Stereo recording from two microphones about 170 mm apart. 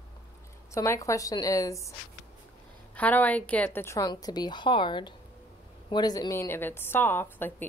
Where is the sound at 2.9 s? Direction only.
10° left (ahead or behind).